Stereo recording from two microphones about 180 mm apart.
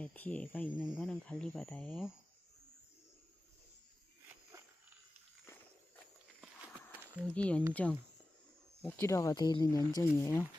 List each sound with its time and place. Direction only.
0.0 s speech: 5° left (ahead or behind)
7.3 s speech: 5° left (ahead or behind)